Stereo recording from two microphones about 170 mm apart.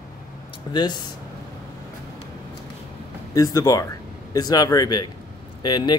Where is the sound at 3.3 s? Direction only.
20° left (ahead or behind).